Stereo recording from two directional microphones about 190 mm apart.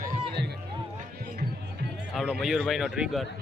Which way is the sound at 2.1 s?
Centre (ahead or behind).